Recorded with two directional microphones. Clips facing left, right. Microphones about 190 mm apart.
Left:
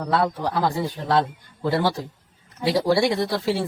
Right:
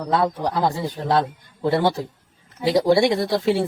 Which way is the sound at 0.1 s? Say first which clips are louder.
Right 2 dB; 15° right (ahead or behind).